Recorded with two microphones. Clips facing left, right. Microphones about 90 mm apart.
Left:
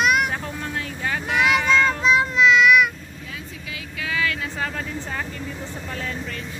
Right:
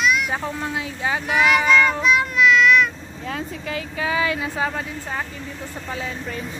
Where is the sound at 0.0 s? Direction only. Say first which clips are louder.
Left 1 dB; 55° left (ahead or behind).